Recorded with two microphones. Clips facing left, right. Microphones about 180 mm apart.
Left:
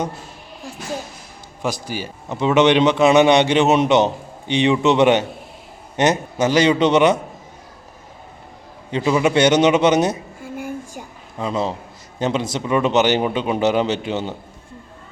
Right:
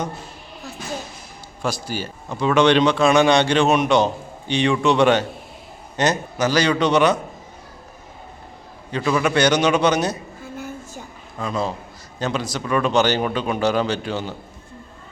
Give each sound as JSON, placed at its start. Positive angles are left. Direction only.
{"t": 1.6, "sound": "speech", "side_deg": 15}
{"t": 8.9, "sound": "speech", "side_deg": 25}
{"t": 10.4, "sound": "a sound", "side_deg": 10}
{"t": 11.3, "sound": "speech", "side_deg": 25}